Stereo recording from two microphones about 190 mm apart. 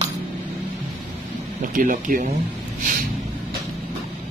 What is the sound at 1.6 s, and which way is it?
Speech, 45° right (ahead or behind).